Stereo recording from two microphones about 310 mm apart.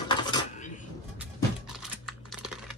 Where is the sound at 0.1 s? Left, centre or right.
Centre.